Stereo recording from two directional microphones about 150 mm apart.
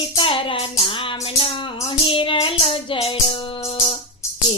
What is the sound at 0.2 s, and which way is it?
Music, 35° left (ahead or behind).